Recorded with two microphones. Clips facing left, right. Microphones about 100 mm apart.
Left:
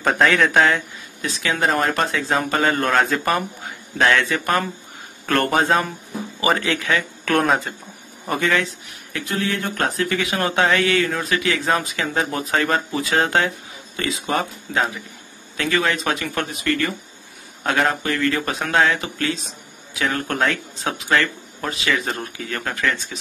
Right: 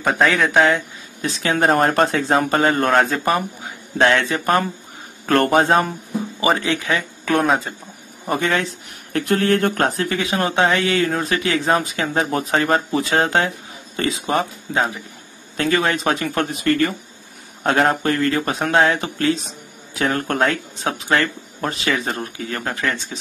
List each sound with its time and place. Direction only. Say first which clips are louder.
0.0 s speech: even; 5° right (ahead or behind)
0.5 s speech: right 1 dB; 15° right (ahead or behind)
1.4 s speech: right 4 dB; 40° right (ahead or behind)
7.2 s speech: right 1 dB; 5° right (ahead or behind)
8.3 s speech: right 1 dB; 30° right (ahead or behind)
9.1 s speech: right 7 dB; 55° right (ahead or behind)
9.8 s speech: right 2 dB; 35° right (ahead or behind)
21.9 s speech: right 1 dB; 30° right (ahead or behind)